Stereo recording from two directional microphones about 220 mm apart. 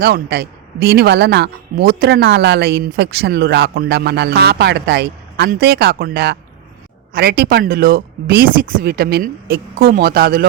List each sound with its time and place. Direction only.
0.0 s speech: 45° right (ahead or behind)